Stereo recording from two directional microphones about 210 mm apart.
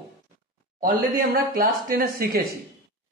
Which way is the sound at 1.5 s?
45° right (ahead or behind).